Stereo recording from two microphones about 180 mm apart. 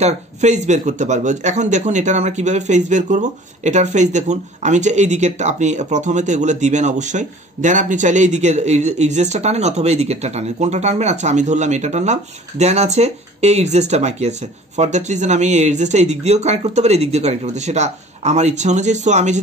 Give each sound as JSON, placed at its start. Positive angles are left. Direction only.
{"t": 0.0, "sound": "speech", "side_deg": -40}